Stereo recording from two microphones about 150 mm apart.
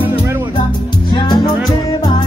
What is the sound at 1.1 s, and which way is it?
Music, 30° left (ahead or behind).